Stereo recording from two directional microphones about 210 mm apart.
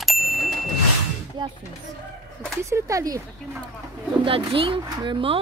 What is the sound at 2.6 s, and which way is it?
Speech, 15° right (ahead or behind).